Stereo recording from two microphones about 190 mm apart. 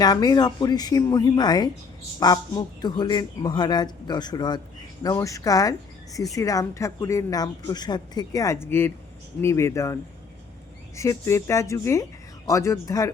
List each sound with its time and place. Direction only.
0.0 s a woman's voice: 20° left (ahead or behind)